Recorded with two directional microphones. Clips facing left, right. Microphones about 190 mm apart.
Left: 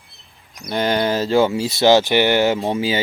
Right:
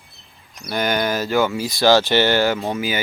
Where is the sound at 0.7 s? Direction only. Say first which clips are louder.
Left 2 dB; 30° left (ahead or behind).